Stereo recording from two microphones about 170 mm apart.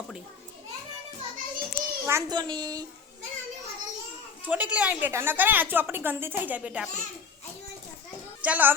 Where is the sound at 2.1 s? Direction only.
20° right (ahead or behind).